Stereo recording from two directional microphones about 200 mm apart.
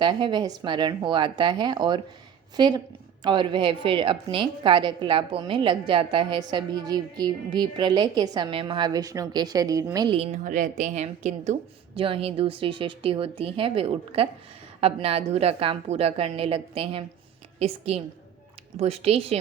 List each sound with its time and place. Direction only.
0.0 s a woman's voice: 20° right (ahead or behind)
10.2 s a woman's voice: 35° right (ahead or behind)